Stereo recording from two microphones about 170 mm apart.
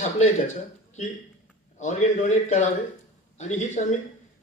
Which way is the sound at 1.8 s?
45° left (ahead or behind).